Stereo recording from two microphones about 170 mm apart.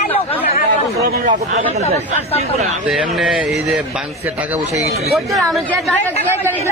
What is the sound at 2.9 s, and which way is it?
Speech, centre (ahead or behind).